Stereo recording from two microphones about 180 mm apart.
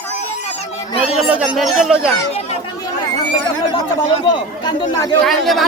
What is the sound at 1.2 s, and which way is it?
Speech, 5° right (ahead or behind).